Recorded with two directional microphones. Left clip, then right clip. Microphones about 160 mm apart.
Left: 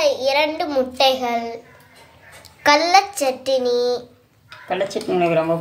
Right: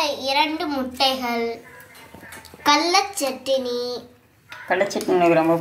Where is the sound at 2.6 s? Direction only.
50° left (ahead or behind).